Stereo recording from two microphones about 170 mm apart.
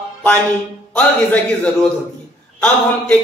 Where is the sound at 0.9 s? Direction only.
5° left (ahead or behind).